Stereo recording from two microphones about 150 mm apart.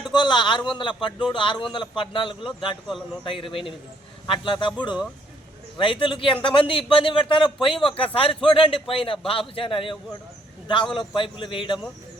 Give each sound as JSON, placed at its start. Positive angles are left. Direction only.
{"t": 0.1, "sound": "a man's voice", "side_deg": 30}
{"t": 10.9, "sound": "a man's voice", "side_deg": 35}